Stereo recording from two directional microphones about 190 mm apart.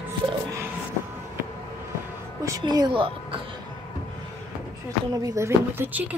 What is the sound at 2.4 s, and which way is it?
Speech, 20° right (ahead or behind).